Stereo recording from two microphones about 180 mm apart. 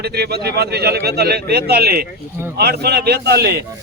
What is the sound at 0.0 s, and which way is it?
Speech, 65° right (ahead or behind).